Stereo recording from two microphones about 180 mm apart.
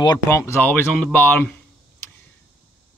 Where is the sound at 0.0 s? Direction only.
20° left (ahead or behind).